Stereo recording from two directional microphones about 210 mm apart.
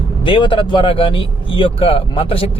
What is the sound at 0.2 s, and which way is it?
Speech, 25° left (ahead or behind).